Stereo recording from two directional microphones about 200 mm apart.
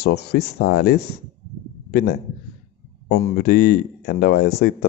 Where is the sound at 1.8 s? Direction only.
50° left (ahead or behind).